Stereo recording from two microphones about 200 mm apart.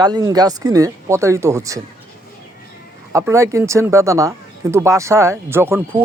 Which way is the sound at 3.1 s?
15° right (ahead or behind).